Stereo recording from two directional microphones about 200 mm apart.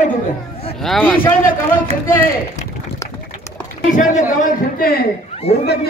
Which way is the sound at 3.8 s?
40° left (ahead or behind).